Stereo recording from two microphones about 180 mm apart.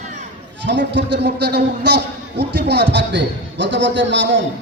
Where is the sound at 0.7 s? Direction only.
80° right.